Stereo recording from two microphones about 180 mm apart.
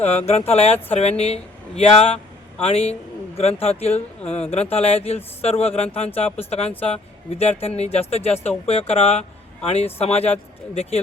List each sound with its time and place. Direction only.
0.3 s speech: 35° left (ahead or behind)